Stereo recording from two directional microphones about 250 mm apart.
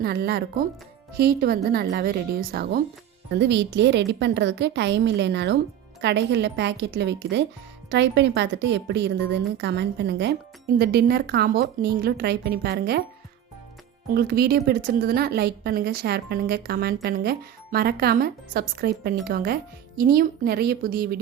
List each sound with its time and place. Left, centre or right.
0.0 s a woman's voice: right
14.1 s a woman's voice: right